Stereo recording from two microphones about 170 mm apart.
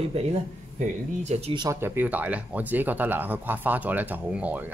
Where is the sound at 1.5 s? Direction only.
20° right (ahead or behind).